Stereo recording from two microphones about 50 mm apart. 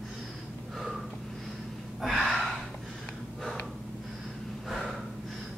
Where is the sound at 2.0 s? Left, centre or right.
Centre.